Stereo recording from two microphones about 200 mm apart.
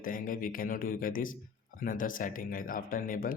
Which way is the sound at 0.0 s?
45° left (ahead or behind).